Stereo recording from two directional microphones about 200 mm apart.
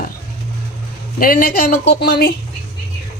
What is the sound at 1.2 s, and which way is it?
A woman's voice, 45° left (ahead or behind).